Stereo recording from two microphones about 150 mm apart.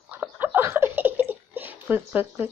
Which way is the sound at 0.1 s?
10° right (ahead or behind).